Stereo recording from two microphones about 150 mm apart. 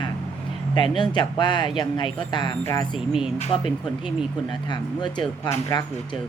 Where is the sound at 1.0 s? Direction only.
30° left (ahead or behind).